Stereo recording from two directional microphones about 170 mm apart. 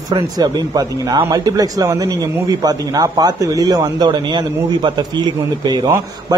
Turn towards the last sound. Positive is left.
turn(degrees=-25)  # may be behind; listen again after turning